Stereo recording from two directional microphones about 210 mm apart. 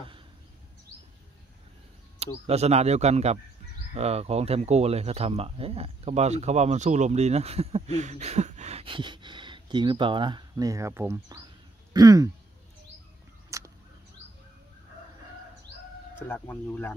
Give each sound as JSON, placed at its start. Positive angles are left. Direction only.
{"t": 2.1, "sound": "speech", "side_deg": -30}
{"t": 13.5, "sound": "a sound", "side_deg": -15}
{"t": 16.2, "sound": "speech", "side_deg": 10}